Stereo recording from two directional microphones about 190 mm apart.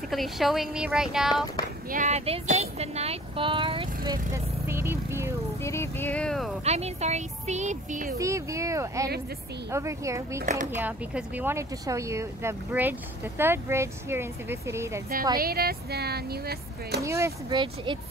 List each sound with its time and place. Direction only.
0.1 s speech: centre (ahead or behind)
1.3 s speech: 20° left (ahead or behind)
1.9 s speech: 40° right (ahead or behind); by 5.3 s 15° right (ahead or behind)
5.6 s speech: 15° left (ahead or behind)
6.6 s speech: 35° right (ahead or behind)
8.2 s speech: 15° right (ahead or behind)
15.3 s speech: 55° right (ahead or behind)
17.0 s speech: 15° right (ahead or behind)